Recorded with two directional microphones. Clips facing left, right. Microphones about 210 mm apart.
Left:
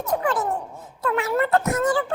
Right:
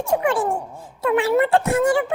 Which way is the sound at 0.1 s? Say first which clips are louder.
Right 4 dB; 20° right (ahead or behind).